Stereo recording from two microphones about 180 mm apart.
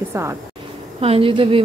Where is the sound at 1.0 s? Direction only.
30° right (ahead or behind).